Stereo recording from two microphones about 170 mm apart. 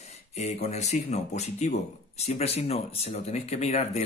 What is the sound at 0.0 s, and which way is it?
Speech, 40° left (ahead or behind).